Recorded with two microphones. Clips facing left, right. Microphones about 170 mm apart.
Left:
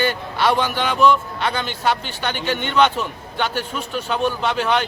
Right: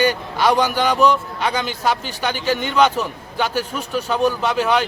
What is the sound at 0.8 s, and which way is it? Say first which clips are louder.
Speech: right 1 dB; 40° right (ahead or behind).